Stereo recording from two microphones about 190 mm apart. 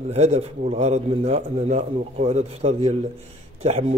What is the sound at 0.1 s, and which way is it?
A man's voice, 35° right (ahead or behind).